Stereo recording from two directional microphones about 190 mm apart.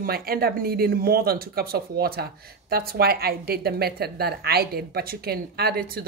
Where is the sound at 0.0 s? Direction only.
50° right (ahead or behind).